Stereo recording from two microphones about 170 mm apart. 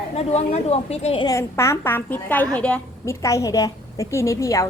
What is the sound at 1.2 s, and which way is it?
A woman's voice, 15° left (ahead or behind).